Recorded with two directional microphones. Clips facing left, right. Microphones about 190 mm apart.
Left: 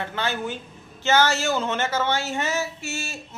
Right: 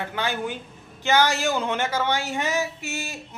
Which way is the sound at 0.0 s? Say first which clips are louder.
Even; 15° right (ahead or behind).